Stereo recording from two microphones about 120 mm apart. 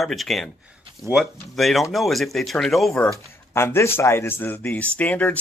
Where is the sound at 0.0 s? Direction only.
Centre (ahead or behind).